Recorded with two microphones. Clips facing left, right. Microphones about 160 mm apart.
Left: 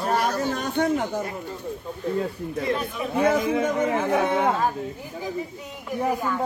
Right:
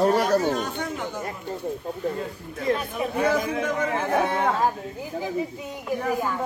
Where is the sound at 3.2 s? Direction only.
25° left (ahead or behind).